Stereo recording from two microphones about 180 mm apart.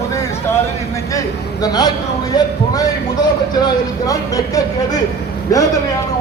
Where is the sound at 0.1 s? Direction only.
15° left (ahead or behind).